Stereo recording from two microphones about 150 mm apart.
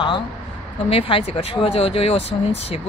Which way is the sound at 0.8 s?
35° left (ahead or behind).